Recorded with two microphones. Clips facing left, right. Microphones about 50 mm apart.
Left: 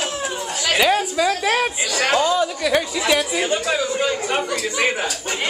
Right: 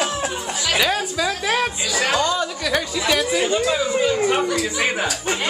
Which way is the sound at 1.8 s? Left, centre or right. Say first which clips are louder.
Even; left.